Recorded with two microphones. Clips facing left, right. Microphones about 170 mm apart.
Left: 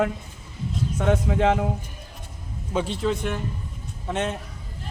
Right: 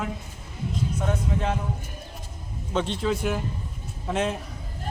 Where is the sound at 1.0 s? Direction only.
90° left.